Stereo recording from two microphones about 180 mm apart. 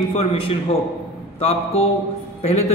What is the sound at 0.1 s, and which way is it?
A man's voice, 35° left (ahead or behind).